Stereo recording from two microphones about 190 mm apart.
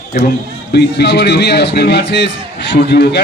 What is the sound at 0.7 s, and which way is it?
A man's voice, 60° left (ahead or behind).